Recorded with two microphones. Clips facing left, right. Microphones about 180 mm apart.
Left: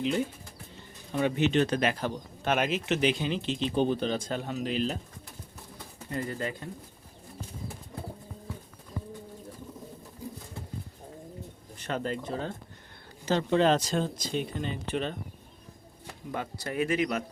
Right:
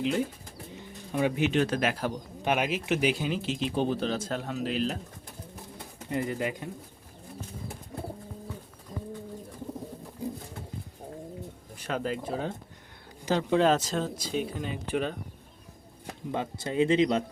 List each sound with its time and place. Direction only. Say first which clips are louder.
0.0 s speech: right 1 dB; centre (ahead or behind)
6.1 s speech: right 3 dB; 15° right (ahead or behind)
11.8 s speech: right 1 dB; 5° right (ahead or behind)
16.3 s speech: right 3 dB; 20° right (ahead or behind)